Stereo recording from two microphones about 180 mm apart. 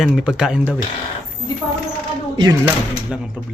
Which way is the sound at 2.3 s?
25° right (ahead or behind).